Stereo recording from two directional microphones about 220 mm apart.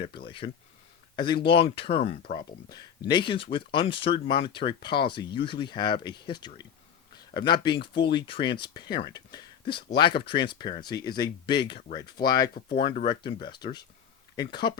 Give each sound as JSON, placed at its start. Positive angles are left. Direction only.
{"t": 0.3, "sound": "speech", "side_deg": 25}